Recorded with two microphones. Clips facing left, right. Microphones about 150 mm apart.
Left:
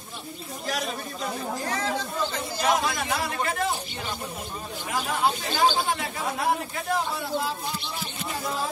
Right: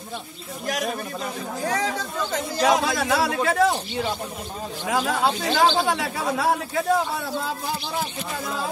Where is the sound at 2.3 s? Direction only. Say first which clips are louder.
Right 6 dB; 90° right.